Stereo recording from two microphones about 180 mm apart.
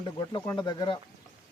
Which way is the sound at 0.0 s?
25° left (ahead or behind).